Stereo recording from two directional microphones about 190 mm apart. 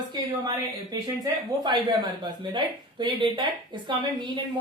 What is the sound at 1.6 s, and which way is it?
A woman's voice, 20° right (ahead or behind).